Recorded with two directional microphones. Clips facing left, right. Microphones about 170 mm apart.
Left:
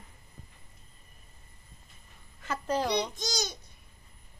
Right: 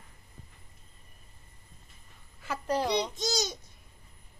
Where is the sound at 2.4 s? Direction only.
10° right (ahead or behind).